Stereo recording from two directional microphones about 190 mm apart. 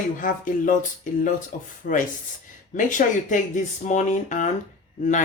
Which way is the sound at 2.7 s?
45° left (ahead or behind).